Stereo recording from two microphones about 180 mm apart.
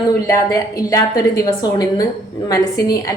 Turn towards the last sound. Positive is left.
turn(degrees=20)  # may be behind; listen again after turning